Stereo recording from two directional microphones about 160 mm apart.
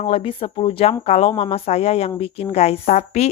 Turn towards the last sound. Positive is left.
turn(degrees=45)  # may be behind; listen again after turning